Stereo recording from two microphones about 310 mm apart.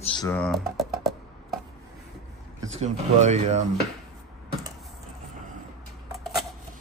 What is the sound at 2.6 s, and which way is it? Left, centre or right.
Speech, right.